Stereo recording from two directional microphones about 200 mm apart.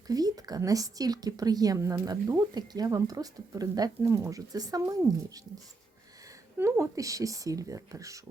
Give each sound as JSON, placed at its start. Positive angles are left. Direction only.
{"t": 0.1, "sound": "speech", "side_deg": -20}
{"t": 6.6, "sound": "speech", "side_deg": -15}